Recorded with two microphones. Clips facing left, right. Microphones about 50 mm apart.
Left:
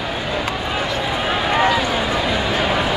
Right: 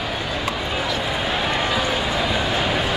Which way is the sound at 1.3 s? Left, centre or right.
Left.